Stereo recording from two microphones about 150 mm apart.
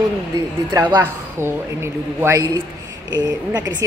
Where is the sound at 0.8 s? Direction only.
25° right (ahead or behind).